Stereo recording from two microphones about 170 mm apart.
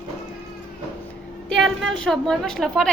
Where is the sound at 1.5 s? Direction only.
Centre (ahead or behind).